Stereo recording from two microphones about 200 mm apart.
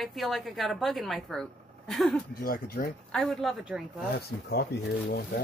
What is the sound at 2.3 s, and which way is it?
Speech, 45° left (ahead or behind).